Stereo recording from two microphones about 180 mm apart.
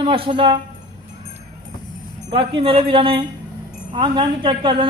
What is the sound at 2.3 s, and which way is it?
A woman's voice, 30° right (ahead or behind).